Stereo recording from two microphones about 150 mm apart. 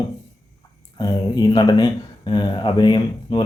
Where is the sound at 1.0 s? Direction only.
30° left (ahead or behind).